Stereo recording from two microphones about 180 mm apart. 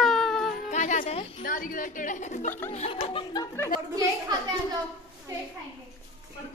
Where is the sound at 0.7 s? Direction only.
45° left (ahead or behind).